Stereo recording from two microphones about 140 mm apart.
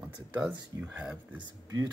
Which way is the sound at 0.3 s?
15° right (ahead or behind).